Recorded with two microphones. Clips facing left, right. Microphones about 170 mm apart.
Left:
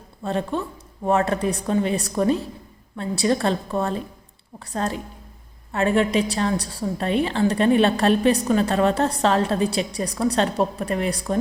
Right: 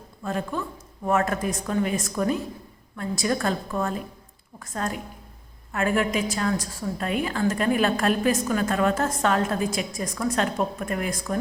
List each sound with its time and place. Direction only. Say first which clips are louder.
0.2 s a woman's voice: left 4 dB; 30° left (ahead or behind)